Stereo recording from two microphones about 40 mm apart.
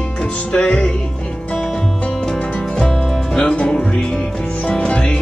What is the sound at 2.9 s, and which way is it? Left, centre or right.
Music, centre.